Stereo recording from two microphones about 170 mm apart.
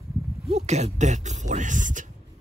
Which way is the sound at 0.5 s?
40° right (ahead or behind).